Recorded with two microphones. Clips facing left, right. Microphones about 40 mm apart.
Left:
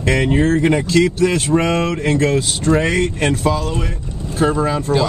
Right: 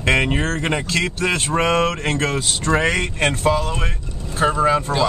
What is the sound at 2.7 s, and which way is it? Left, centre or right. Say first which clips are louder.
Speech: left 3 dB; right.